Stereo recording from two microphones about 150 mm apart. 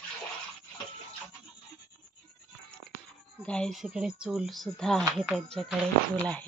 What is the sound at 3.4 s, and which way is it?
A woman's voice, 5° left (ahead or behind).